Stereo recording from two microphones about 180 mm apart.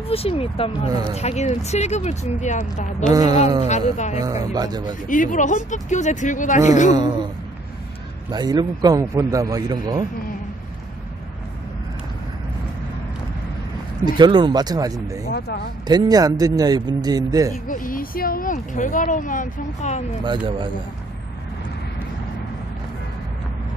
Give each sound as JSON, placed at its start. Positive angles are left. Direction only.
{"t": 0.1, "sound": "speech", "side_deg": 30}
{"t": 3.1, "sound": "a man's voice", "side_deg": -20}
{"t": 3.6, "sound": "speech", "side_deg": 40}
{"t": 4.2, "sound": "a man's voice", "side_deg": -20}
{"t": 5.0, "sound": "speech", "side_deg": 45}
{"t": 6.9, "sound": "a man's voice", "side_deg": -25}
{"t": 8.3, "sound": "a man's voice", "side_deg": -20}
{"t": 14.0, "sound": "a man's voice", "side_deg": -25}
{"t": 15.3, "sound": "speech", "side_deg": 60}
{"t": 15.9, "sound": "a man's voice", "side_deg": -20}
{"t": 17.6, "sound": "speech", "side_deg": 50}
{"t": 20.2, "sound": "a man's voice", "side_deg": -25}